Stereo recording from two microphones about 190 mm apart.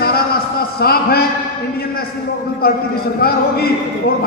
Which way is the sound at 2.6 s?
55° left (ahead or behind).